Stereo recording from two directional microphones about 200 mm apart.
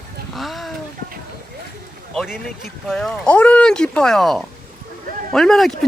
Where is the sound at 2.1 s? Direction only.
Centre (ahead or behind).